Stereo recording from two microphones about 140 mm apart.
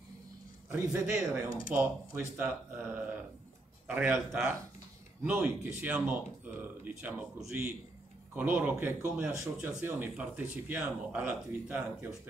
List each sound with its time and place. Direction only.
0.7 s speech: 15° right (ahead or behind)